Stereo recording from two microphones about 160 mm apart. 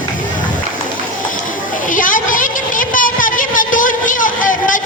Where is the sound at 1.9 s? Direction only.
55° left (ahead or behind).